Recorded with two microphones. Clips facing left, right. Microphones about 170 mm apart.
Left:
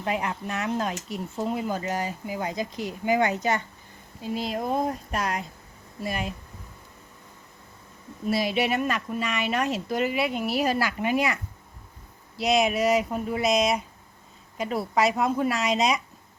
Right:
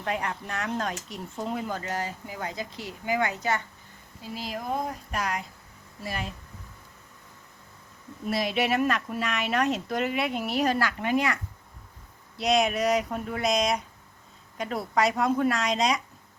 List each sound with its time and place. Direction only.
0.0 s speech: 10° left (ahead or behind)
8.3 s speech: centre (ahead or behind)
12.4 s speech: 5° left (ahead or behind)